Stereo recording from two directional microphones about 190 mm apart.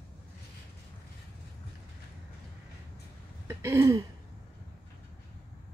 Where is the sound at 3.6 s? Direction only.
15° right (ahead or behind).